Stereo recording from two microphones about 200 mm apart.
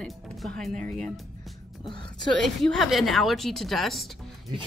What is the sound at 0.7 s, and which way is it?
Speech, 40° right (ahead or behind).